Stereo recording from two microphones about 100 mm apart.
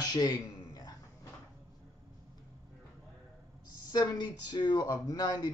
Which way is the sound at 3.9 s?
40° left (ahead or behind).